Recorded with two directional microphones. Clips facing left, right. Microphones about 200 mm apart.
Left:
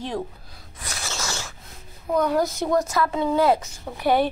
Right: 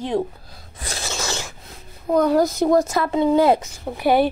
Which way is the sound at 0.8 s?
30° right (ahead or behind).